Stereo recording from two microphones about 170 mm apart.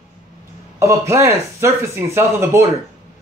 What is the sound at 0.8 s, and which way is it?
Speech, 15° right (ahead or behind).